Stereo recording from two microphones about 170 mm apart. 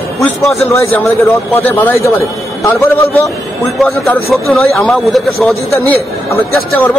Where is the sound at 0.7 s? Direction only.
15° left (ahead or behind).